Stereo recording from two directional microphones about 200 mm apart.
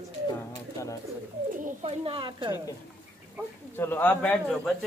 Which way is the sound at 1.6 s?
30° right (ahead or behind).